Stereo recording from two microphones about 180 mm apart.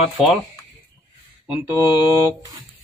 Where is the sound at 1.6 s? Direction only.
15° right (ahead or behind).